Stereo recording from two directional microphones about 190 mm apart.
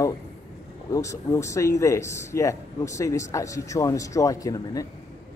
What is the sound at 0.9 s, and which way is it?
Speech, 15° left (ahead or behind).